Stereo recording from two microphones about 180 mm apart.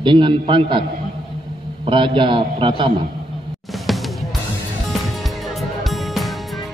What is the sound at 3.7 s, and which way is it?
Music, centre (ahead or behind).